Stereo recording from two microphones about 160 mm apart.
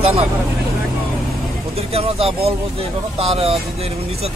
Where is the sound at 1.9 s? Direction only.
40° right (ahead or behind).